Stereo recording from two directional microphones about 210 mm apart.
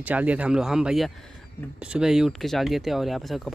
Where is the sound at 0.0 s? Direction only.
5° right (ahead or behind).